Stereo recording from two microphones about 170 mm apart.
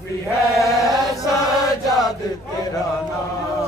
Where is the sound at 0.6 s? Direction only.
20° left (ahead or behind).